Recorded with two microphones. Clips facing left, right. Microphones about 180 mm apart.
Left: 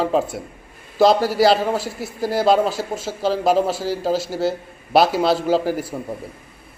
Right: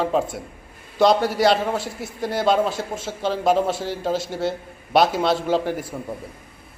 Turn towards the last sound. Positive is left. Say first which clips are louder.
# left 3 dB
turn(degrees=15)  # may be behind; listen again after turning